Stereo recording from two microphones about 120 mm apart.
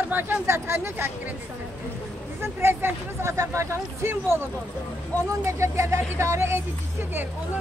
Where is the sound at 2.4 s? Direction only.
20° right (ahead or behind).